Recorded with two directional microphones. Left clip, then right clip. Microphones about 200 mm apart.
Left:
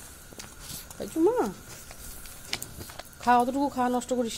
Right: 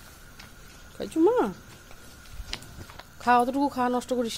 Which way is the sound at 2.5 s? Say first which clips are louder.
Left 3 dB; 35° left (ahead or behind).